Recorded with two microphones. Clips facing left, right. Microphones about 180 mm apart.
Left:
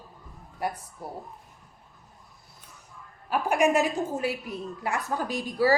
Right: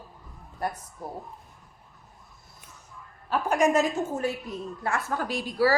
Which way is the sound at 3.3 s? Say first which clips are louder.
Even; 15° left (ahead or behind).